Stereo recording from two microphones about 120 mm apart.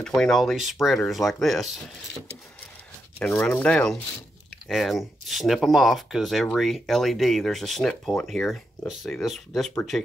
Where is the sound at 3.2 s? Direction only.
15° left (ahead or behind).